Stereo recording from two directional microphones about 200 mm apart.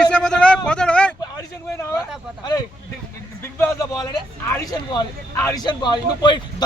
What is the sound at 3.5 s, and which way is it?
Speech, 10° left (ahead or behind).